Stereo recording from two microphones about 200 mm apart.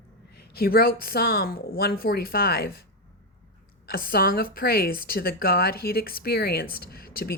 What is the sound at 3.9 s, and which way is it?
A woman's voice, 45° left (ahead or behind).